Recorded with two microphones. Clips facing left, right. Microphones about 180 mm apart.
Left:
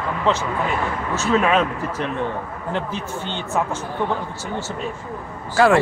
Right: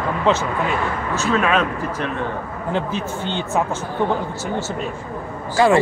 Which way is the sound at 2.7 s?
15° right (ahead or behind).